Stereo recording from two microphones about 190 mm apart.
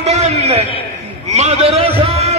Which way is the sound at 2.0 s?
35° right (ahead or behind).